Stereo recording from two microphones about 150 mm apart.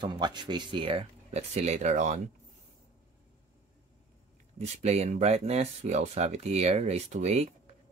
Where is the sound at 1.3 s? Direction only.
50° right (ahead or behind).